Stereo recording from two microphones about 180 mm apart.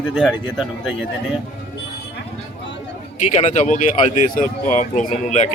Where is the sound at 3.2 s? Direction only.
40° left (ahead or behind).